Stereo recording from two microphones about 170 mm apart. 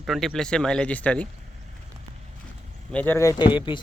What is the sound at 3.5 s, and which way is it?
Speech, 30° left (ahead or behind).